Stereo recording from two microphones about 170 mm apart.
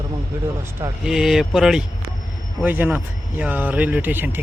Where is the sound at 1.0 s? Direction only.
5° right (ahead or behind).